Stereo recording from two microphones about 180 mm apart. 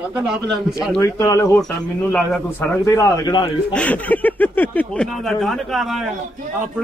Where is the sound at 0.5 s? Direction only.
Centre (ahead or behind).